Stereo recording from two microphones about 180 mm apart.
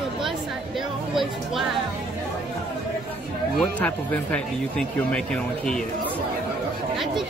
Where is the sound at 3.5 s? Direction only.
5° left (ahead or behind).